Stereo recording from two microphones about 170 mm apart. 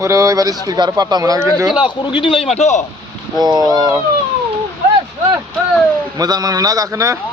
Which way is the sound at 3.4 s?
25° right (ahead or behind).